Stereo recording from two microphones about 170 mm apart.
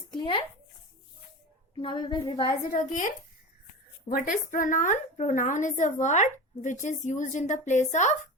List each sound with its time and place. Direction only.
0.1 s a sound: 30° left (ahead or behind)
1.8 s a woman's voice: 30° left (ahead or behind)
2.3 s a woman's voice: 50° left (ahead or behind)
4.1 s a woman's voice: 50° left (ahead or behind)